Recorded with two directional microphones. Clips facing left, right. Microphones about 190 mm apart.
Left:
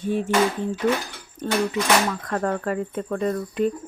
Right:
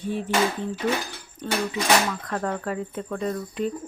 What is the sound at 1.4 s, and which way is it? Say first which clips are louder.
Speech: left 3 dB; 45° left (ahead or behind).